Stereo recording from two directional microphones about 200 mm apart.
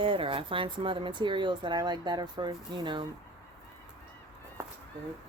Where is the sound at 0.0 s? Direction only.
25° right (ahead or behind).